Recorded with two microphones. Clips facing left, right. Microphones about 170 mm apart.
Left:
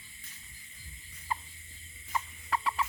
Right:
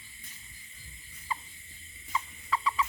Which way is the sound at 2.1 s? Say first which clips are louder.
Right 1 dB; 55° left (ahead or behind).